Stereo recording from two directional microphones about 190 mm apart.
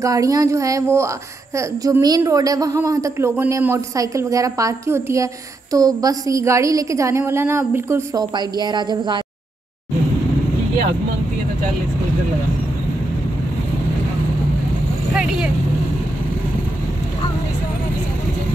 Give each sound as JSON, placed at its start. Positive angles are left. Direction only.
{"t": 0.0, "sound": "a woman's voice", "side_deg": -20}